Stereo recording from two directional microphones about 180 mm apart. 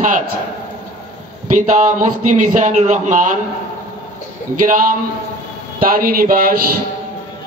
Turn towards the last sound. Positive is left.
turn(degrees=-55)  # may be behind; listen again after turning